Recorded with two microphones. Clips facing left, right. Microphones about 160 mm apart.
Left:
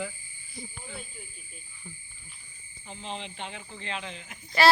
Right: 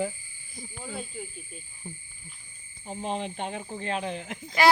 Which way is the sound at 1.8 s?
40° right (ahead or behind).